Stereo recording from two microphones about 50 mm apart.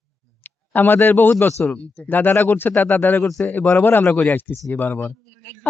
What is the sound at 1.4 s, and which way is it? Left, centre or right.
Speech, left.